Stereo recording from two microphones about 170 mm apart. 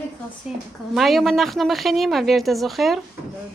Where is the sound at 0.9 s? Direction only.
Centre (ahead or behind).